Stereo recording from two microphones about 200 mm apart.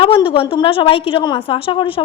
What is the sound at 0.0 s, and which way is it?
A woman's voice, 25° left (ahead or behind).